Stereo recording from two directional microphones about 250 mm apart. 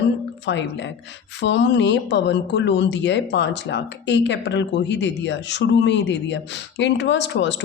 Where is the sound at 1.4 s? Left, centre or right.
Left.